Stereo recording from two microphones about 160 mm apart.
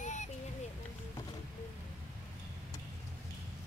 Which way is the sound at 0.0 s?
50° left (ahead or behind).